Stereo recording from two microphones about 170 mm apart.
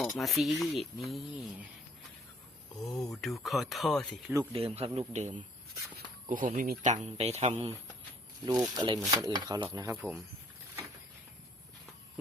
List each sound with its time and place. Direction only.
0.0 s speech: centre (ahead or behind)
2.8 s speech: 20° left (ahead or behind)
3.1 s speech: centre (ahead or behind)
4.5 s speech: 35° right (ahead or behind)
6.2 s speech: 50° right (ahead or behind)
8.4 s speech: 25° right (ahead or behind)
9.9 s speech: 5° right (ahead or behind)